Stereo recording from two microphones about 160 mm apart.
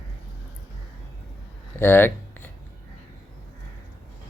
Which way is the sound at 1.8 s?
10° left (ahead or behind).